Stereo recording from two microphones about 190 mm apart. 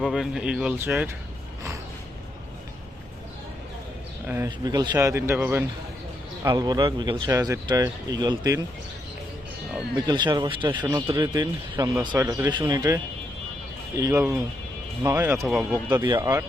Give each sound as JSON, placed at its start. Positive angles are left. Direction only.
{"t": 0.0, "sound": "speech", "side_deg": 0}
{"t": 4.4, "sound": "speech", "side_deg": -20}
{"t": 9.9, "sound": "speech", "side_deg": -25}